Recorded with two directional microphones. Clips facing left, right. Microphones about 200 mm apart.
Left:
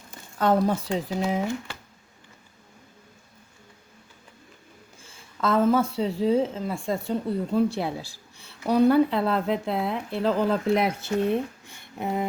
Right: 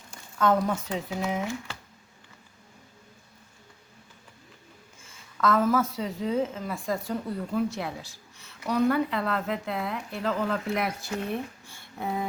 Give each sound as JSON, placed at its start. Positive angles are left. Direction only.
{"t": 0.3, "sound": "speech", "side_deg": 30}
{"t": 5.0, "sound": "a woman's voice", "side_deg": 25}